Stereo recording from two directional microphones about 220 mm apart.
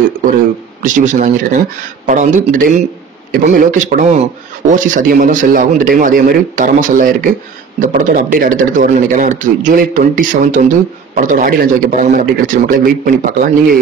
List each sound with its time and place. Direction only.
0.8 s speech: 35° right (ahead or behind)